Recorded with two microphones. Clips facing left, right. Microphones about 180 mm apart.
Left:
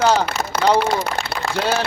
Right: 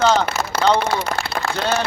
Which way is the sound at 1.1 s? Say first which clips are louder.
Right 1 dB; 40° right (ahead or behind).